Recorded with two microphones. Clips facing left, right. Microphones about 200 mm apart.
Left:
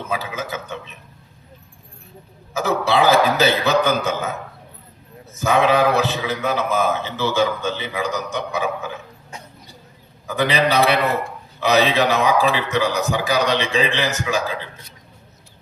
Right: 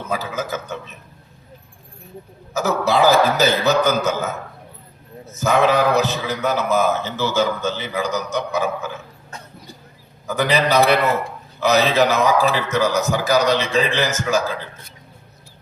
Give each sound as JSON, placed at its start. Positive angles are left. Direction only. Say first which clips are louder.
{"t": 0.1, "sound": "a man's voice", "louder": "right 3 dB", "side_deg": -40}
{"t": 2.5, "sound": "a man's voice", "louder": "right 1 dB", "side_deg": -40}
{"t": 10.2, "sound": "a man's voice", "louder": "even", "side_deg": -40}